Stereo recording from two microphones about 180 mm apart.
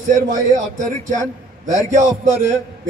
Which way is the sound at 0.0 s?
45° right (ahead or behind).